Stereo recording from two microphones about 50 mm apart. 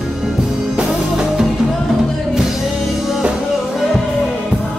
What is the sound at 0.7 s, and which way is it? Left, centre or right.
Music, centre.